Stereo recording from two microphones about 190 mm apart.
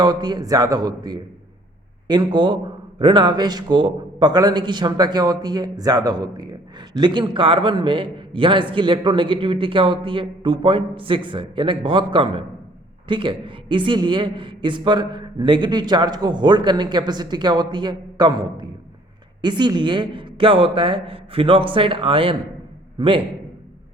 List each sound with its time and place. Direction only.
0.0 s a man's voice: 20° right (ahead or behind)